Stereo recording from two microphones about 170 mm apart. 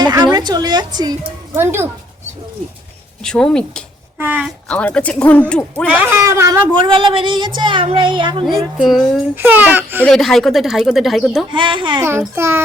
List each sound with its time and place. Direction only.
0.0 s a woman's voice: 25° right (ahead or behind)
3.2 s speech: 5° left (ahead or behind)
4.2 s speech: 10° right (ahead or behind)
4.7 s speech: 5° left (ahead or behind)
5.9 s speech: 10° right (ahead or behind); by 8.4 s 30° right (ahead or behind)
8.4 s speech: centre (ahead or behind)
9.3 s speech: 10° right (ahead or behind)
10.0 s speech: 5° left (ahead or behind)
11.5 s speech: 30° right (ahead or behind)
12.3 s speech: 15° right (ahead or behind)